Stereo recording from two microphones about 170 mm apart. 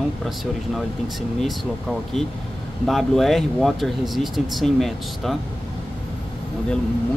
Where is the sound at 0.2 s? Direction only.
Centre (ahead or behind).